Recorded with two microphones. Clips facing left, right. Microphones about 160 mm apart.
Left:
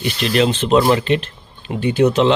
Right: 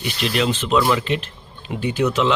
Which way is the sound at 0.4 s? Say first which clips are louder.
Left 5 dB; 25° left (ahead or behind).